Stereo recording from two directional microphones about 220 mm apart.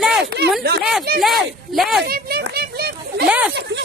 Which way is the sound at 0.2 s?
50° right (ahead or behind).